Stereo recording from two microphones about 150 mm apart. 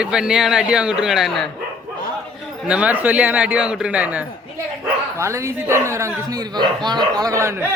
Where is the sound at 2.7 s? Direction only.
10° right (ahead or behind).